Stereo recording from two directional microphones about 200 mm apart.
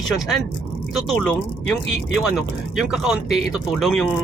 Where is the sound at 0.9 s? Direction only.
Centre (ahead or behind).